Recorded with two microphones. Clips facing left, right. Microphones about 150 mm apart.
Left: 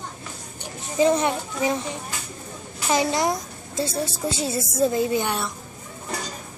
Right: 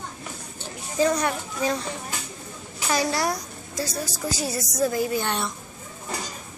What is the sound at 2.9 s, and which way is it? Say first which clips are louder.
A woman's voice: left 3 dB; 20° left (ahead or behind).